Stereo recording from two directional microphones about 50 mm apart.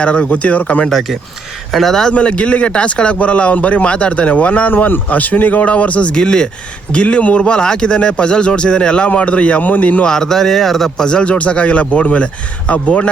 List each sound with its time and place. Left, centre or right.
0.0 s a man's voice: left
1.7 s speech: centre
2.0 s a man's voice: left
6.1 s a man's voice: centre; by 10.0 s left
10.0 s a man's voice: centre